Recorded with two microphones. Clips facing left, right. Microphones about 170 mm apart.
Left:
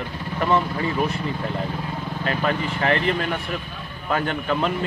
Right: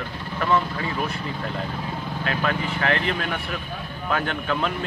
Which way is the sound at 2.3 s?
10° left (ahead or behind).